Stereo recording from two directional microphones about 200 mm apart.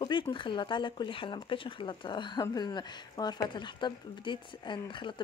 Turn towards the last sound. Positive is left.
turn(degrees=25)  # may be behind; listen again after turning